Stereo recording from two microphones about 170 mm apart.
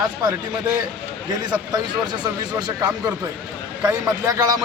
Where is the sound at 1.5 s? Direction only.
25° right (ahead or behind).